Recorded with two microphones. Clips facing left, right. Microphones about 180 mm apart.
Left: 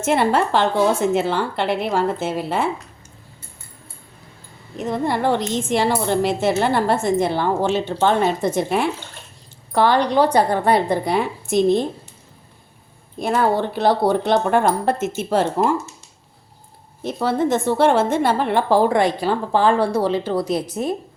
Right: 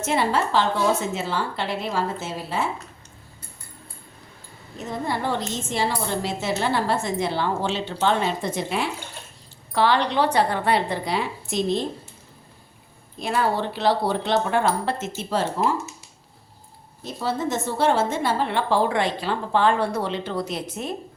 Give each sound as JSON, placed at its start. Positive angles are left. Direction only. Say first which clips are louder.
{"t": 0.0, "sound": "a woman's voice", "louder": "left 5 dB", "side_deg": 60}
{"t": 4.8, "sound": "a woman's voice", "louder": "left 6 dB", "side_deg": 60}
{"t": 13.1, "sound": "a woman's voice", "louder": "left 5 dB", "side_deg": 50}
{"t": 17.0, "sound": "a woman's voice", "louder": "left 6 dB", "side_deg": 60}